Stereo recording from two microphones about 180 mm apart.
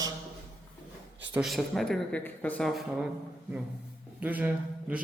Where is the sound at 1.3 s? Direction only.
Centre (ahead or behind).